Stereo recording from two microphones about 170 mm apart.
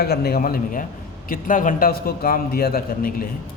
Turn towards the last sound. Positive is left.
turn(degrees=60)  # may be behind; listen again after turning